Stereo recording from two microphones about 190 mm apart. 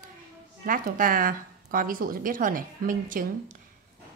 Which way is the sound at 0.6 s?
45° right (ahead or behind).